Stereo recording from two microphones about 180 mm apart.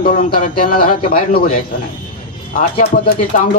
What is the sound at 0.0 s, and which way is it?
Speech, 50° left (ahead or behind).